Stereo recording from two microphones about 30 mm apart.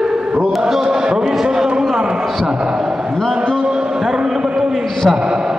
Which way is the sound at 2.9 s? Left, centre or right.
Right.